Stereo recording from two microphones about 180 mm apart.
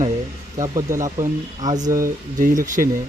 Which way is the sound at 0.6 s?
15° right (ahead or behind).